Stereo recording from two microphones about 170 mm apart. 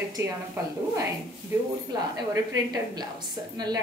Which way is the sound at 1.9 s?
25° right (ahead or behind).